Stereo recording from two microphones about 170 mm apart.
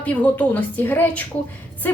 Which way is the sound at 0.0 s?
10° left (ahead or behind).